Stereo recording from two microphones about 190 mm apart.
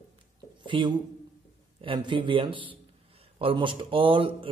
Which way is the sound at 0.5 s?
25° right (ahead or behind).